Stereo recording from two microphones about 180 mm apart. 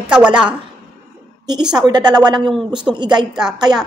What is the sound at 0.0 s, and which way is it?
Speech, 5° right (ahead or behind).